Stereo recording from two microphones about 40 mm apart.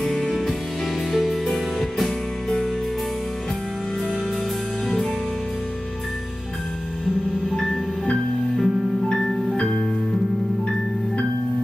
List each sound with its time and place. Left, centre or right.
0.0 s music: centre
4.8 s music: centre
7.5 s music: centre
9.6 s music: left